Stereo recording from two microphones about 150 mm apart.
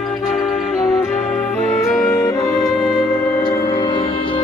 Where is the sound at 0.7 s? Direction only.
Centre (ahead or behind).